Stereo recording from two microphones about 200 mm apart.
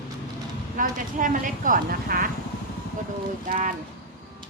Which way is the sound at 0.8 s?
40° right (ahead or behind).